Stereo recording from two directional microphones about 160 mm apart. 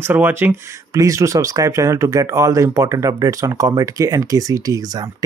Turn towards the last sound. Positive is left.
turn(degrees=-25)  # may be behind; listen again after turning